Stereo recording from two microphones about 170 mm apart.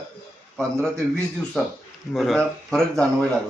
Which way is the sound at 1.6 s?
Centre (ahead or behind).